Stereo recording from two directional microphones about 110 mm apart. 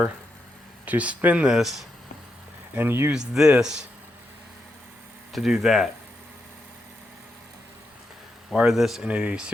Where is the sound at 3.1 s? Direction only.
5° right (ahead or behind).